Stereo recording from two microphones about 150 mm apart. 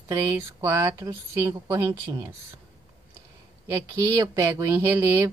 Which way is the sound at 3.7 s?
20° right (ahead or behind).